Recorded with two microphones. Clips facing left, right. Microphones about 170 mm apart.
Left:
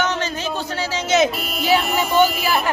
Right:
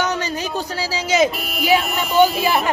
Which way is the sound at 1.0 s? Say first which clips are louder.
Even; 10° right (ahead or behind).